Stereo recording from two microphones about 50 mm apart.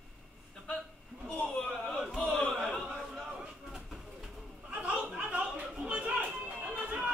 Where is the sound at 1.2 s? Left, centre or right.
Centre.